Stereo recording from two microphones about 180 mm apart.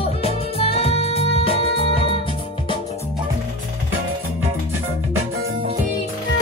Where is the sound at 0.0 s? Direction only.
35° left (ahead or behind).